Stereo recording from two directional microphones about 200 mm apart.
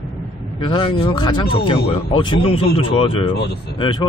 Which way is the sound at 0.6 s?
25° left (ahead or behind).